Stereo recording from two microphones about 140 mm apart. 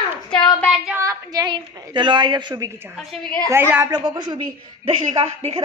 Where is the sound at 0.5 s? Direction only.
10° left (ahead or behind).